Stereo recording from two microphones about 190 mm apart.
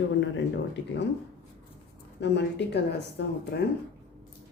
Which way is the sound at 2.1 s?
65° left (ahead or behind).